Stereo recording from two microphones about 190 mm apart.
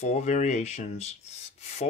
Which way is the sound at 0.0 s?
35° left (ahead or behind).